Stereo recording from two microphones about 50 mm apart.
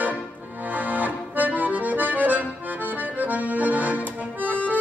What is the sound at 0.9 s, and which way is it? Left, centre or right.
Accordion, right.